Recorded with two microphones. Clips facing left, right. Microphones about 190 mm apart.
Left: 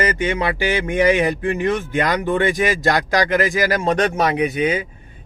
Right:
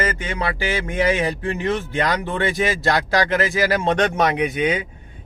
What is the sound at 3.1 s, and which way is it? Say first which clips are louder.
Speech: left 2 dB; 15° left (ahead or behind).